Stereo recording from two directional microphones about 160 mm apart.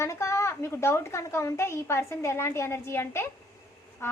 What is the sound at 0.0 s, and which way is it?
A woman's voice, 15° left (ahead or behind).